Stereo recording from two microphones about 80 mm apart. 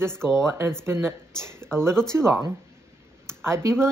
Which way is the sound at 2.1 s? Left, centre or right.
Right.